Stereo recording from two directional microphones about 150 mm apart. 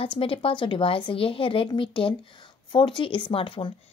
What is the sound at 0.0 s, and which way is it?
Speech, 35° left (ahead or behind).